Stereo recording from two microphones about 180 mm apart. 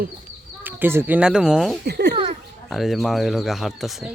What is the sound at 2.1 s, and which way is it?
Oink, 30° right (ahead or behind).